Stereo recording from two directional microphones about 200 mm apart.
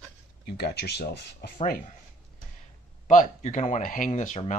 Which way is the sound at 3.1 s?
40° left (ahead or behind).